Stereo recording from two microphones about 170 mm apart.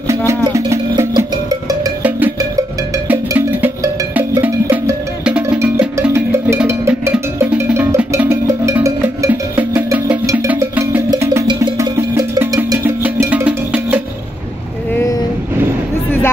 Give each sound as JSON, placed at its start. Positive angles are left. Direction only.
{"t": 0.5, "sound": "music", "side_deg": -20}
{"t": 2.0, "sound": "music", "side_deg": -10}